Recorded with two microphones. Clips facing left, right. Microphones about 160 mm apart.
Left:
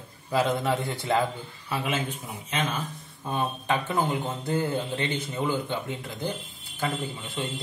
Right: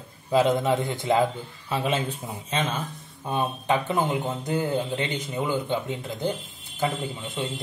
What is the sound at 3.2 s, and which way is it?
Speech, 20° right (ahead or behind).